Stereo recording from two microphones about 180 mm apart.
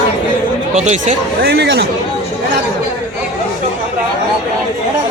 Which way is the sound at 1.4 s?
65° right (ahead or behind).